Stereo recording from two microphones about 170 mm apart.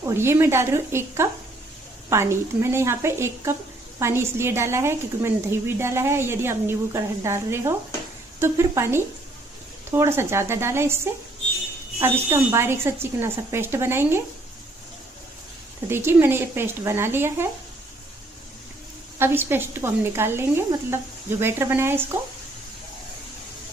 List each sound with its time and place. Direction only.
0.0 s a woman's voice: 15° right (ahead or behind)
12.0 s a woman's voice: 15° right (ahead or behind)
15.9 s a woman's voice: 15° right (ahead or behind)
19.1 s a woman's voice: 15° right (ahead or behind)